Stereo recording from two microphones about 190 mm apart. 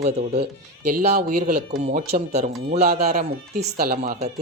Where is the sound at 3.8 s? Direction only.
50° right (ahead or behind).